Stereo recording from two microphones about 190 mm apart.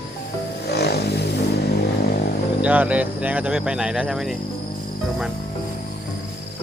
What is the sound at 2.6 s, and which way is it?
Speech, 5° right (ahead or behind).